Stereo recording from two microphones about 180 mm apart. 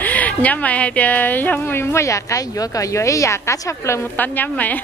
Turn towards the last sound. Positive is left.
turn(degrees=10)  # may be behind; listen again after turning